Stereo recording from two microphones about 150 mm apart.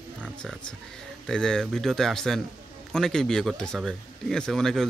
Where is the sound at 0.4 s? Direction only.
5° left (ahead or behind).